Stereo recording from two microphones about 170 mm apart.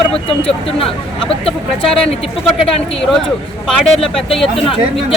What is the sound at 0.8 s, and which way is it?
Speech, 35° left (ahead or behind).